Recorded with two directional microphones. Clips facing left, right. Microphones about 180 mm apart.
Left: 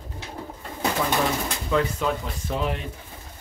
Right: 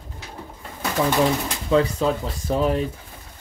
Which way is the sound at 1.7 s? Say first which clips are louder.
Right 5 dB; 30° right (ahead or behind).